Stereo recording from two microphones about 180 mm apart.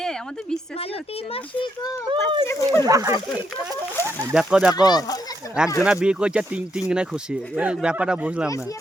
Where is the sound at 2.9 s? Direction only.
20° right (ahead or behind).